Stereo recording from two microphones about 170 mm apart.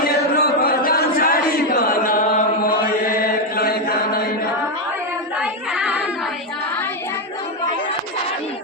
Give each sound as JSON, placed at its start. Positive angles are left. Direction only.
{"t": 0.0, "sound": "chant", "side_deg": 60}
{"t": 3.6, "sound": "chant", "side_deg": 65}
{"t": 5.4, "sound": "child singing", "side_deg": -5}